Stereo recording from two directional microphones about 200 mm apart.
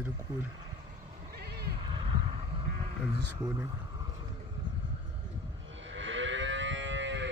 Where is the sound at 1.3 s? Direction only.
55° right (ahead or behind).